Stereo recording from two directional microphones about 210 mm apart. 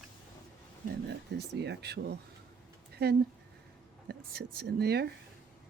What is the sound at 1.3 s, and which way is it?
A woman's voice, 55° right (ahead or behind).